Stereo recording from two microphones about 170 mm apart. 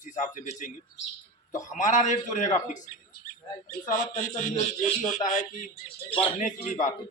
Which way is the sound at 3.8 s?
50° left (ahead or behind).